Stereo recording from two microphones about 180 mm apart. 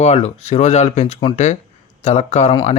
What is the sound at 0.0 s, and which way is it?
Speech, 35° left (ahead or behind).